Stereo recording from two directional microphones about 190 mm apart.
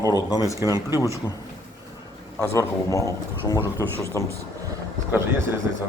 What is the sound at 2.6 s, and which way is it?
A man's voice, 15° left (ahead or behind).